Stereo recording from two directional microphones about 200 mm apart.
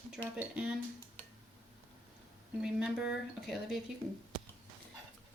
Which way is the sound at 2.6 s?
5° right (ahead or behind).